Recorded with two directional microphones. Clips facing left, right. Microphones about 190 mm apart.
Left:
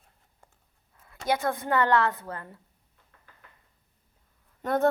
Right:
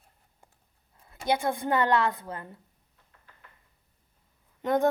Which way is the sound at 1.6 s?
15° right (ahead or behind).